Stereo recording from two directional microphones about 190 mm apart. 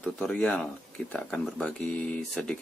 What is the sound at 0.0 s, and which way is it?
Speech, 5° left (ahead or behind).